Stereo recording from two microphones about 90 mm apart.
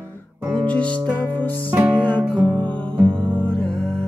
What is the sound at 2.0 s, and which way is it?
Music, 15° left (ahead or behind).